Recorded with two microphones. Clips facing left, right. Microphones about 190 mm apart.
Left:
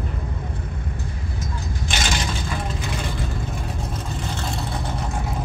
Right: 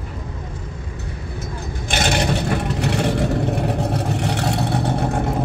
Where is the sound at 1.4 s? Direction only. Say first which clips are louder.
Right 2 dB; 60° right (ahead or behind).